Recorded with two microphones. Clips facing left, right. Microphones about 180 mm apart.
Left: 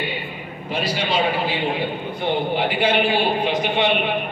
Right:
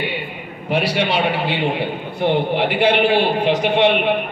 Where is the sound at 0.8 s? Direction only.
75° right (ahead or behind).